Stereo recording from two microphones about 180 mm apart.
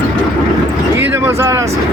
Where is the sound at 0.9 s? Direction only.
15° right (ahead or behind).